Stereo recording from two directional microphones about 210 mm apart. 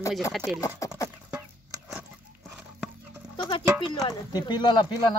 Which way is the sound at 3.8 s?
20° left (ahead or behind).